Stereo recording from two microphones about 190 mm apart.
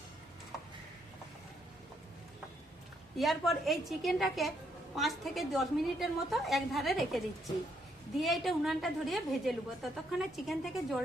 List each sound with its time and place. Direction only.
3.2 s a woman's voice: centre (ahead or behind)